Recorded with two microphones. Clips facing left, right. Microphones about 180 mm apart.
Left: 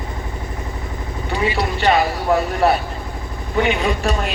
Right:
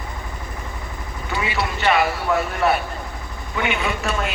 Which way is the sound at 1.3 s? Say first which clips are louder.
Left 4 dB; 35° left (ahead or behind).